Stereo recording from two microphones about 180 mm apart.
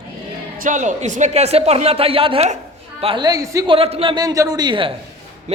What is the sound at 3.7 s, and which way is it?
A man's voice, 30° right (ahead or behind).